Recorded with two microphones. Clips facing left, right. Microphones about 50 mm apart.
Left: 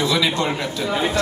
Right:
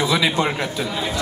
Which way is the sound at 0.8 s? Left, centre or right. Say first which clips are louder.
Left 4 dB; left.